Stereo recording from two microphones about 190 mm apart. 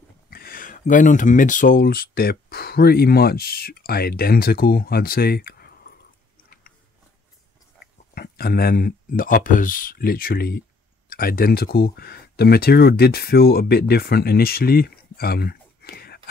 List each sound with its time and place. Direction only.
0.3 s speech: 50° left (ahead or behind)
8.1 s speech: 55° left (ahead or behind)